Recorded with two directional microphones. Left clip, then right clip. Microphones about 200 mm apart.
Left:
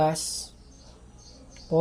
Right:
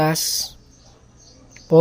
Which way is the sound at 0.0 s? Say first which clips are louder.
Right 5 dB; 30° right (ahead or behind).